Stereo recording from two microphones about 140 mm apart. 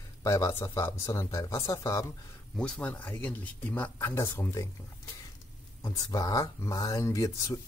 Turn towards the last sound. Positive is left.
turn(degrees=25)  # may be behind; listen again after turning